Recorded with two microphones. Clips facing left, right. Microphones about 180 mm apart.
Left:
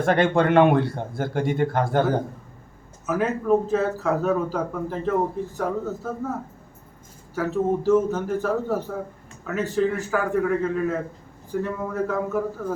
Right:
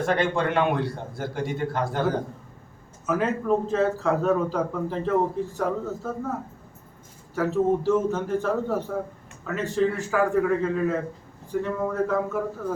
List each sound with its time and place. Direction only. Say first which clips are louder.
0.0 s a man's voice: left 4 dB; 55° left (ahead or behind)
3.1 s a man's voice: left 2 dB; 5° left (ahead or behind)
7.3 s a man's voice: right 1 dB; centre (ahead or behind)